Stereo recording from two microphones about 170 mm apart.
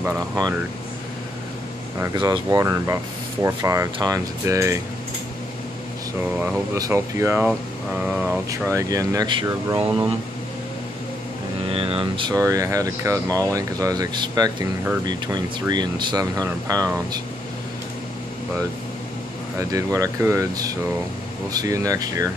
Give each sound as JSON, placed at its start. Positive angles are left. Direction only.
{"t": 2.1, "sound": "speech", "side_deg": -25}
{"t": 6.2, "sound": "speech", "side_deg": -10}
{"t": 11.7, "sound": "speech", "side_deg": -35}
{"t": 19.7, "sound": "speech", "side_deg": -20}